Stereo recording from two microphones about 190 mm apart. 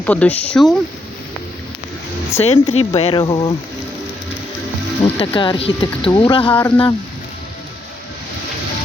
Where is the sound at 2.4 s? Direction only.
35° left (ahead or behind).